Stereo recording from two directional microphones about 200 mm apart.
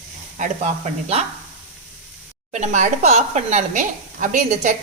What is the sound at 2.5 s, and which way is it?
Speech, 35° right (ahead or behind).